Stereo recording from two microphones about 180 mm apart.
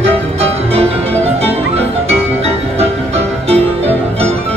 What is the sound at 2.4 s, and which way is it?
Music, 35° right (ahead or behind).